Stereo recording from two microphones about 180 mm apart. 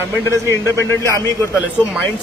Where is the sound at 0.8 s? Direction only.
15° left (ahead or behind).